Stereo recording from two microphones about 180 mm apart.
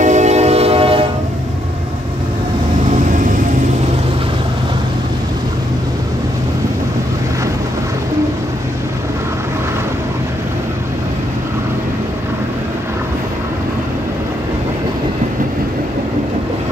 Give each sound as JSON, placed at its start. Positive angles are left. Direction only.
{"t": 0.0, "sound": "train", "side_deg": -40}